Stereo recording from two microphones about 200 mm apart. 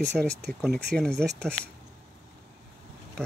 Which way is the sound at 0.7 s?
55° right (ahead or behind).